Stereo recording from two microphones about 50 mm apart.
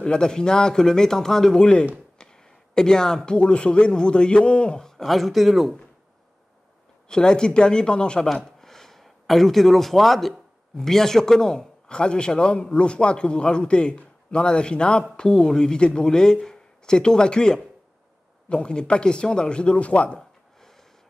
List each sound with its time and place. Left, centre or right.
0.0 s speech: centre
2.1 s a sound: centre
3.3 s speech: left; by 5.8 s centre
7.1 s a man's voice: centre